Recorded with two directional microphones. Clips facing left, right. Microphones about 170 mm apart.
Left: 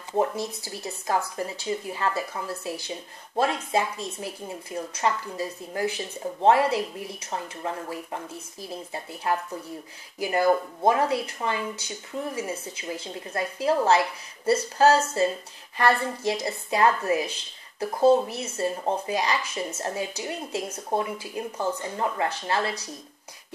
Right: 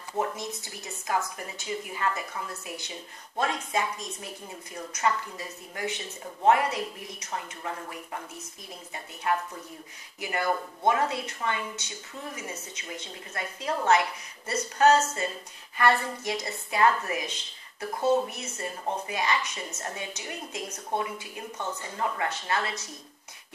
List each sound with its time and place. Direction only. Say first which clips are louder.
0.7 s a woman's voice: left 4 dB; 30° left (ahead or behind)